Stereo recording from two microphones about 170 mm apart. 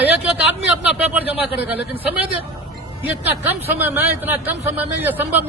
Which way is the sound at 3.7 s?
10° right (ahead or behind).